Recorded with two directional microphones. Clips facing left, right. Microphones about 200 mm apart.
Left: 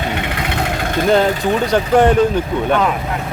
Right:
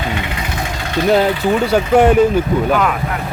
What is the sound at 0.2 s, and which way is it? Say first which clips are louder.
Vehicle: left 2 dB; 65° left (ahead or behind).